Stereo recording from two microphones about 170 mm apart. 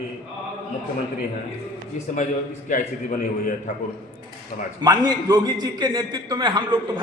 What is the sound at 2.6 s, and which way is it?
Speech, 50° left (ahead or behind).